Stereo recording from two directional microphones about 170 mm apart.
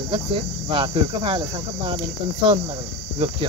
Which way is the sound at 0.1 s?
30° right (ahead or behind).